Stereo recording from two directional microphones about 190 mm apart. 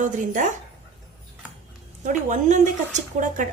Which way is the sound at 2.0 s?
40° right (ahead or behind).